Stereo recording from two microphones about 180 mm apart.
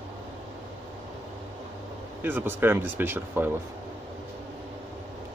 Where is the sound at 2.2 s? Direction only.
10° right (ahead or behind).